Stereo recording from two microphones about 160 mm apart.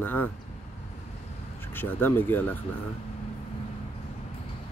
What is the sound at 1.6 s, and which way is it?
Speech, 15° left (ahead or behind).